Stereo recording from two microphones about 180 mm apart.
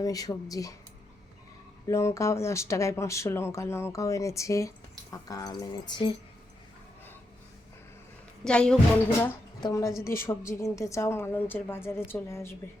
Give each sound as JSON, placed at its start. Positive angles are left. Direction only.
{"t": 0.0, "sound": "speech", "side_deg": 20}
{"t": 1.9, "sound": "speech", "side_deg": 15}
{"t": 8.4, "sound": "speech", "side_deg": 5}
{"t": 9.6, "sound": "a woman's voice", "side_deg": 20}